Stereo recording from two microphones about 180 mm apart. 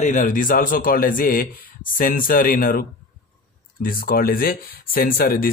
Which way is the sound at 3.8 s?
55° left (ahead or behind).